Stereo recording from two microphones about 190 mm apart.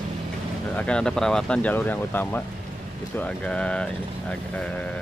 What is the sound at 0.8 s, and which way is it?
Speech, 5° left (ahead or behind).